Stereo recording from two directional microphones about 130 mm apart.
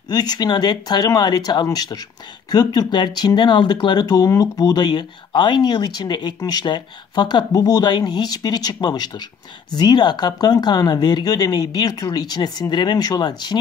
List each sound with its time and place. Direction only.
0.1 s speech: 30° left (ahead or behind)